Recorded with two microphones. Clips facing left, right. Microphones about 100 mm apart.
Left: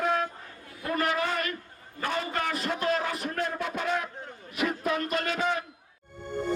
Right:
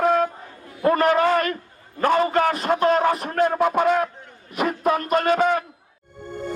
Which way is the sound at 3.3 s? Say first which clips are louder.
Right 12 dB; 55° right (ahead or behind).